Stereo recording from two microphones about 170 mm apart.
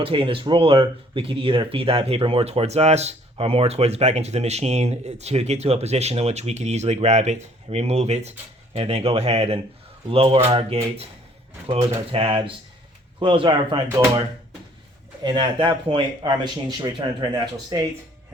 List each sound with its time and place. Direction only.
0.0 s speech: 30° right (ahead or behind)
15.2 s speech: 30° right (ahead or behind)